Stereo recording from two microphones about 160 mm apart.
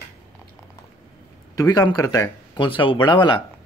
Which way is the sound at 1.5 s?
25° left (ahead or behind).